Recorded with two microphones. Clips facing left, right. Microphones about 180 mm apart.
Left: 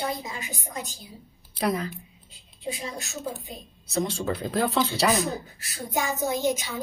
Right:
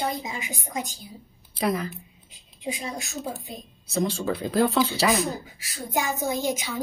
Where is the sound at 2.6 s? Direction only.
15° right (ahead or behind).